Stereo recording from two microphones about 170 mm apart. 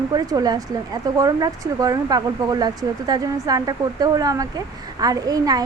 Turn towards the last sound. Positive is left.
turn(degrees=-20)  # may be behind; listen again after turning